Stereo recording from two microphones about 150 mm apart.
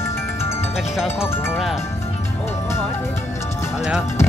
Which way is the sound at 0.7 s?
5° right (ahead or behind).